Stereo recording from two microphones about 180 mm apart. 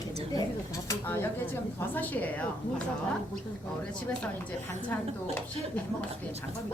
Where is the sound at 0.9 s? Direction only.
10° left (ahead or behind).